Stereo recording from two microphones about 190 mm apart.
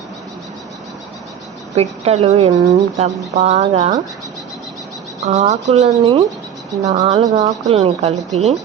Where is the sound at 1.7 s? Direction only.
35° right (ahead or behind).